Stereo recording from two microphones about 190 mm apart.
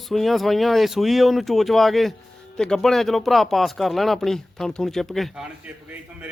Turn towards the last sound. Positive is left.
turn(degrees=0)  # may be behind; listen again after turning